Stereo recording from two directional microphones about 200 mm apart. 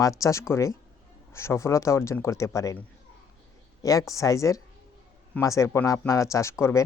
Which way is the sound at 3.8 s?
15° left (ahead or behind).